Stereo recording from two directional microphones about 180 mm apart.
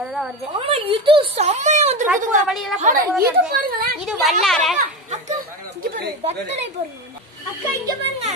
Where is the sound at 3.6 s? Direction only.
55° right (ahead or behind).